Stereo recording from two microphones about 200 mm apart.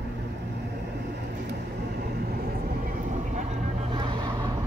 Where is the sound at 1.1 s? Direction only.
55° right (ahead or behind); by 4.4 s 25° right (ahead or behind).